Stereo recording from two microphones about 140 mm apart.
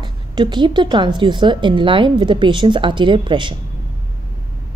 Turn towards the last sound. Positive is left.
turn(degrees=-35)  # may be behind; listen again after turning